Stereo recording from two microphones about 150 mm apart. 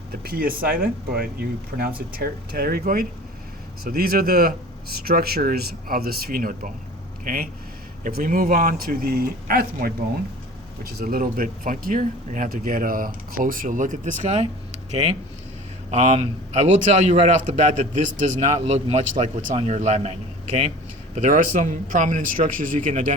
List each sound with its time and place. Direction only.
0.1 s speech: 80° right; by 14.4 s 50° right (ahead or behind)
15.9 s a man's voice: 45° right (ahead or behind)
21.2 s a man's voice: 55° right (ahead or behind)
22.7 s speech: 60° right (ahead or behind)